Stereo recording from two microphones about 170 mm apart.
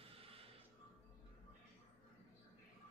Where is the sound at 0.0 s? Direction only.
35° right (ahead or behind).